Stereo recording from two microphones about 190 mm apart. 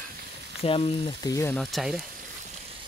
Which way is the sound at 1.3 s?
15° left (ahead or behind).